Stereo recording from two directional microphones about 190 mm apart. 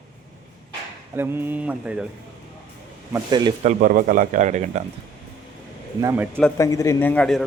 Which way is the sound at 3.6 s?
45° right (ahead or behind).